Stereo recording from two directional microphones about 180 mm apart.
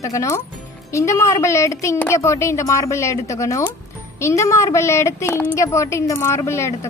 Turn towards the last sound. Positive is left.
turn(degrees=15)  # may be behind; listen again after turning